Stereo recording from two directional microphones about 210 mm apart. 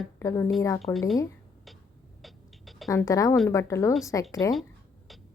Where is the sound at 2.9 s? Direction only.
15° left (ahead or behind).